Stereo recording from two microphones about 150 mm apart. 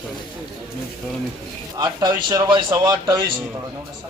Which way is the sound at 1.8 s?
25° right (ahead or behind).